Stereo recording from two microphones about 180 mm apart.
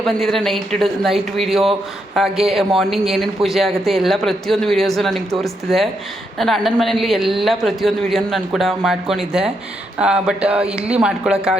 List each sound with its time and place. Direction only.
0.0 s a man's voice: centre (ahead or behind)